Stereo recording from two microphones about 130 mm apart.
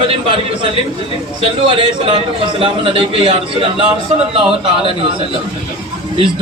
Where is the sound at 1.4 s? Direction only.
45° right (ahead or behind).